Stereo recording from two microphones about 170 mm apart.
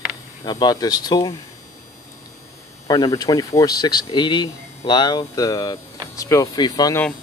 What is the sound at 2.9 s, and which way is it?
Speech, 25° left (ahead or behind).